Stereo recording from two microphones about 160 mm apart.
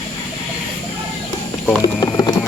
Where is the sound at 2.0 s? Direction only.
25° left (ahead or behind).